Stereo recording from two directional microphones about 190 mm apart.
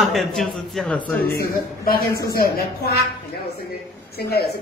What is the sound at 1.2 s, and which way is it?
A man's voice, 50° left (ahead or behind).